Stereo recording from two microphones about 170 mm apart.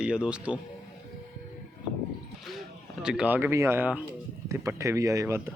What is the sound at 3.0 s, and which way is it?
A man's voice, 5° right (ahead or behind).